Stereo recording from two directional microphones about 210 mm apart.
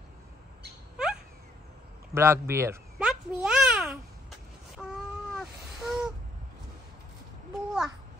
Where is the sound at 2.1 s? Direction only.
10° right (ahead or behind).